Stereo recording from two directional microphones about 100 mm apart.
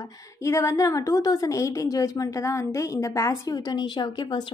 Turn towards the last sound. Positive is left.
turn(degrees=50)  # may be behind; listen again after turning